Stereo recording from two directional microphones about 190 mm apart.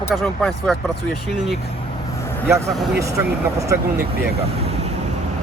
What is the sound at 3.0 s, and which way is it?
Speech, 15° right (ahead or behind).